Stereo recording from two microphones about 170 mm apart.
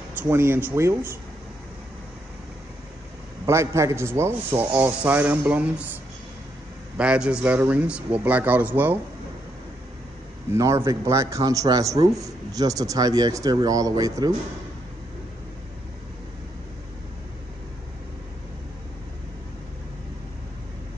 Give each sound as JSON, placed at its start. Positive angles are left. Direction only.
{"t": 0.2, "sound": "a man's voice", "side_deg": -15}
{"t": 3.4, "sound": "a man's voice", "side_deg": -15}
{"t": 7.0, "sound": "a man's voice", "side_deg": -5}
{"t": 10.5, "sound": "a man's voice", "side_deg": -15}